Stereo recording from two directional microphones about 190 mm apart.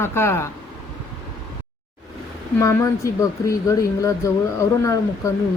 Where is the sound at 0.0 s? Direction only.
15° left (ahead or behind).